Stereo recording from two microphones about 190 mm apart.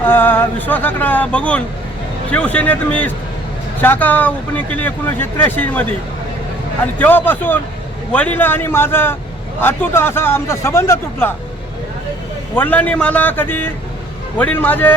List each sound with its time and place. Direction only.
0.0 s speech: 10° left (ahead or behind)
7.0 s speech: 10° left (ahead or behind)
12.5 s speech: 10° left (ahead or behind)